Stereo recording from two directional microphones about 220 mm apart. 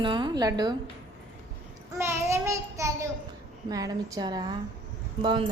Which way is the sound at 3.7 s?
15° right (ahead or behind).